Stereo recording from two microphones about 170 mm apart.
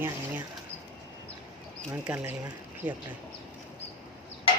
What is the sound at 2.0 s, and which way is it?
Speech, 10° right (ahead or behind).